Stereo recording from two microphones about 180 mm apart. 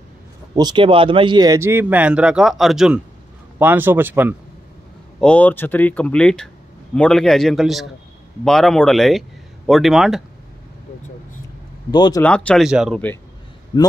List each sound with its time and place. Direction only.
0.6 s speech: 25° right (ahead or behind)
5.2 s a man's voice: 5° left (ahead or behind)
11.9 s speech: 25° left (ahead or behind)
12.2 s a man's voice: 5° left (ahead or behind)